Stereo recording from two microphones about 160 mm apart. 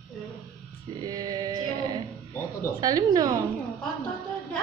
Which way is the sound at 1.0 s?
25° right (ahead or behind).